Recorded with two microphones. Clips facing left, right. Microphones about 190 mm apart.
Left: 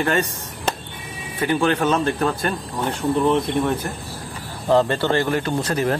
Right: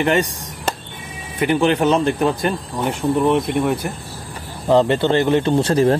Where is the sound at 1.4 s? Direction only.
20° right (ahead or behind).